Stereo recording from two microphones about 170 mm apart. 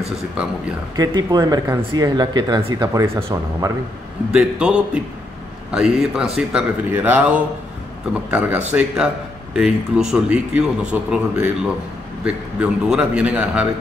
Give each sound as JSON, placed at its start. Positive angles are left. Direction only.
{"t": 0.9, "sound": "speech", "side_deg": -25}
{"t": 4.3, "sound": "a man's voice", "side_deg": -5}